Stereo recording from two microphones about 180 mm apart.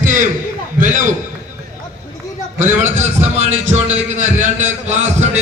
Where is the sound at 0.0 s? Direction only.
45° right (ahead or behind).